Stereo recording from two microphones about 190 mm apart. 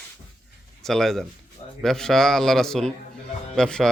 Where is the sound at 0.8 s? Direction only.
5° left (ahead or behind).